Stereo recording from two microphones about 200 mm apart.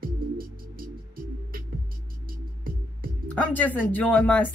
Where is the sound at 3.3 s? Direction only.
10° left (ahead or behind).